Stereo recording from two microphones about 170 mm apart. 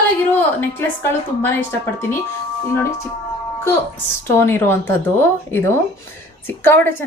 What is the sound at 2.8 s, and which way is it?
Speech, 15° left (ahead or behind).